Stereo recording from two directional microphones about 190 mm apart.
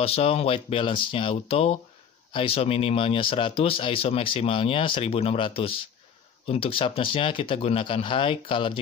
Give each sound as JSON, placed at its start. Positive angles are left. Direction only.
{"t": 0.0, "sound": "speech", "side_deg": 30}